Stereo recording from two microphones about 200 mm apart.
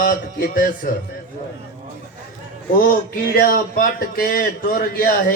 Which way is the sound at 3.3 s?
45° left (ahead or behind).